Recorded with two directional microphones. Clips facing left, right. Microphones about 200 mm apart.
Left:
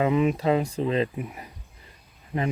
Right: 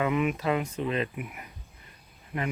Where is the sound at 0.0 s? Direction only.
30° left (ahead or behind).